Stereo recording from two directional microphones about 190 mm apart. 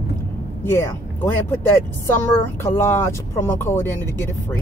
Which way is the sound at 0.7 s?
15° left (ahead or behind).